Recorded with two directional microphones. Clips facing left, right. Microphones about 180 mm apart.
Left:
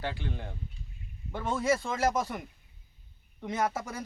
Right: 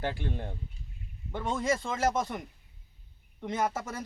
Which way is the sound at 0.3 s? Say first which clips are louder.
Right 2 dB; 30° right (ahead or behind).